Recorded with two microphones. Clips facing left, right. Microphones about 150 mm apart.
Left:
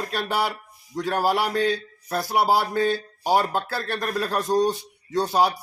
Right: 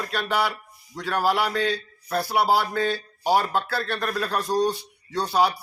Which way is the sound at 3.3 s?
45° left (ahead or behind).